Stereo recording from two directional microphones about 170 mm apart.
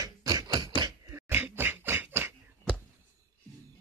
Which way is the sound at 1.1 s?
15° right (ahead or behind).